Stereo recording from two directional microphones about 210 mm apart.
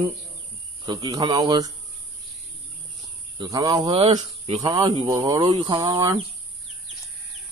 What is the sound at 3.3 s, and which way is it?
Speech, 15° right (ahead or behind).